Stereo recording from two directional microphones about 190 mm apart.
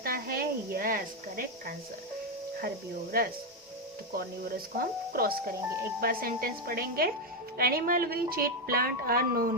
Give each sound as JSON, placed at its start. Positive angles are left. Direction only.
{"t": 0.0, "sound": "speech", "side_deg": -50}